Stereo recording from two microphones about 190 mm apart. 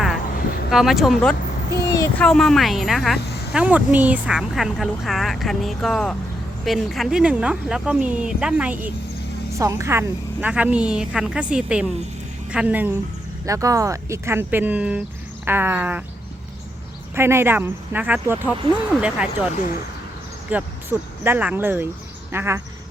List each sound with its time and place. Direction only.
0.3 s a sound: 50° left (ahead or behind)
0.7 s speech: centre (ahead or behind)
1.7 s a sound: 15° left (ahead or behind)
2.2 s speech: centre (ahead or behind)
17.2 s speech: 15° right (ahead or behind)
20.5 s speech: 10° right (ahead or behind)